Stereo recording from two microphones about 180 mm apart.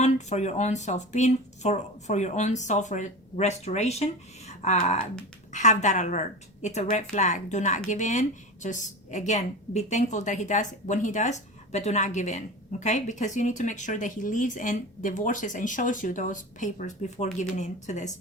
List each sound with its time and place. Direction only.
0.0 s a woman's voice: 40° left (ahead or behind)